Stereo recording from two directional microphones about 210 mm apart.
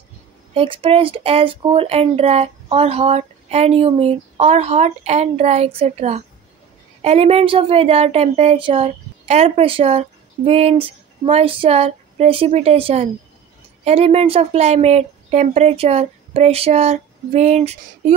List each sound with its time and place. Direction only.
0.6 s a woman's voice: 25° right (ahead or behind)